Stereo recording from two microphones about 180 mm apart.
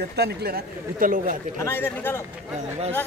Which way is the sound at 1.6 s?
15° left (ahead or behind).